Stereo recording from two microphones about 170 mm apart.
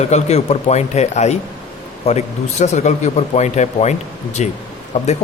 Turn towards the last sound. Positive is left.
turn(degrees=40)  # may be behind; listen again after turning